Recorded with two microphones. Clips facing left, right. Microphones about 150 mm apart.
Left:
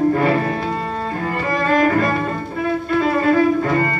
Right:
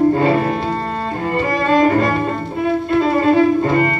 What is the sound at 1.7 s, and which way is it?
Cello, 25° right (ahead or behind).